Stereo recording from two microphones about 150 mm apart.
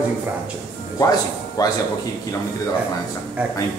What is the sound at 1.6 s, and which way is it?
Speech, 25° left (ahead or behind).